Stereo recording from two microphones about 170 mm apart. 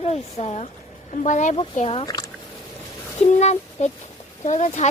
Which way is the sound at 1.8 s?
35° left (ahead or behind).